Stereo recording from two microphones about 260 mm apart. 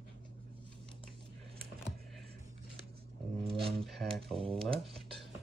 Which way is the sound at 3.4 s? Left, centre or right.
Right.